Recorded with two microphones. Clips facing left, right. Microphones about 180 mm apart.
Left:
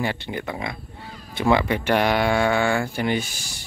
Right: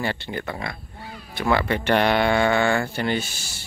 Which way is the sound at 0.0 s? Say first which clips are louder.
Left 1 dB; 15° left (ahead or behind).